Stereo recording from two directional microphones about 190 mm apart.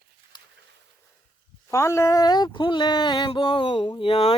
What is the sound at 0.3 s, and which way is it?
Dog, 25° left (ahead or behind).